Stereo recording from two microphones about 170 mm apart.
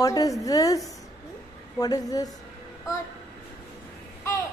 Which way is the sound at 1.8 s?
20° left (ahead or behind).